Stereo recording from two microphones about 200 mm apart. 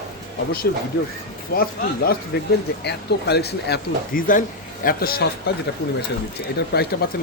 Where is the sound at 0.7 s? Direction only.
60° left (ahead or behind).